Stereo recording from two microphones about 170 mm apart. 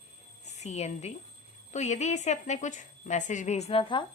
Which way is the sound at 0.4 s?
40° left (ahead or behind).